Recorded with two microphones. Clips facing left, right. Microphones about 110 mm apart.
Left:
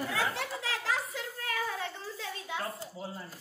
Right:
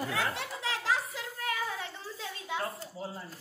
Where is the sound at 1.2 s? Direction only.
20° right (ahead or behind).